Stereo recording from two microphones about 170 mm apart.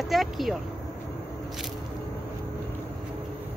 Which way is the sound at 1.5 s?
Centre (ahead or behind).